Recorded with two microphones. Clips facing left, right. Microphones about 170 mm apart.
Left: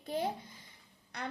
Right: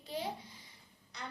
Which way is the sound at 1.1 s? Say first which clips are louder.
Left 6 dB; 60° left (ahead or behind).